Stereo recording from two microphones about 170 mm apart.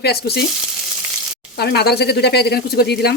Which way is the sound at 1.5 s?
70° left (ahead or behind).